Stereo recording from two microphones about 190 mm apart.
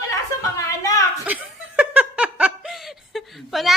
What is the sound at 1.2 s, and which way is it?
Laughter, 5° right (ahead or behind).